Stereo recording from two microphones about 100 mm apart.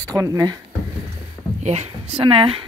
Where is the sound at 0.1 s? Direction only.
35° right (ahead or behind).